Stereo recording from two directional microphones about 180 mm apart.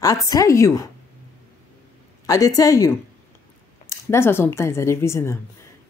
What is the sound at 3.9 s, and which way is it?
Speech, 15° left (ahead or behind).